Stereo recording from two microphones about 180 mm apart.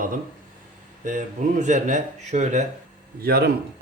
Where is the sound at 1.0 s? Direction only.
45° right (ahead or behind).